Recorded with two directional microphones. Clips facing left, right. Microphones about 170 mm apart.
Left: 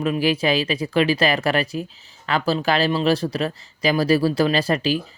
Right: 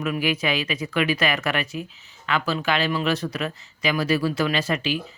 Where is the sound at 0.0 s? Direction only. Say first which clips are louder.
Left 4 dB; 30° left (ahead or behind).